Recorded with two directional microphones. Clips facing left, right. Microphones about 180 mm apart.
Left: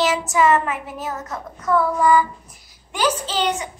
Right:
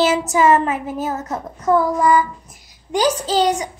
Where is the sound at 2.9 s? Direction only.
40° right (ahead or behind).